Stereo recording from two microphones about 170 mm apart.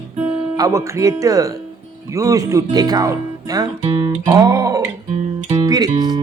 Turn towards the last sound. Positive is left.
turn(degrees=-25)  # may be behind; listen again after turning